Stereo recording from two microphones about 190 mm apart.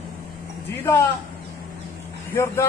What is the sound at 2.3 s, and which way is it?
Speech, 15° left (ahead or behind).